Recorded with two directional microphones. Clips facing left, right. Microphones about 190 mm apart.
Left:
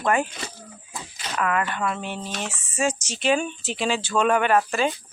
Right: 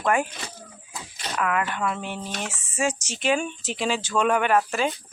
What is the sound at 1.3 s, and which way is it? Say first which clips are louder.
Speech: left 1 dB; 5° right (ahead or behind).